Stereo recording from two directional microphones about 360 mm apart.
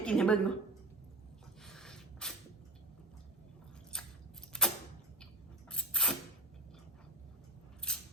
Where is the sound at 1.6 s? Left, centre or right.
Centre.